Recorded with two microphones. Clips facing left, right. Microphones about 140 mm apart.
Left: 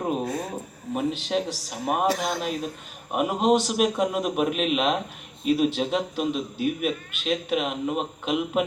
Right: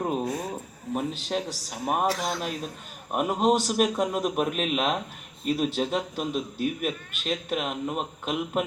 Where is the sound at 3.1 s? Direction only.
Centre (ahead or behind).